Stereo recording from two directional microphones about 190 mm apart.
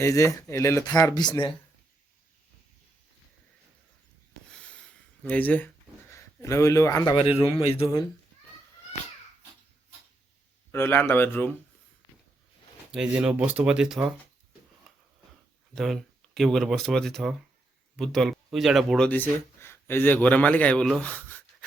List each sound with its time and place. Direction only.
0.0 s speech: 15° left (ahead or behind)
5.2 s speech: 5° left (ahead or behind); by 7.8 s 30° left (ahead or behind)
7.8 s speech: 15° left (ahead or behind)
10.7 s speech: 10° left (ahead or behind)
12.9 s speech: 5° right (ahead or behind)
15.7 s speech: centre (ahead or behind)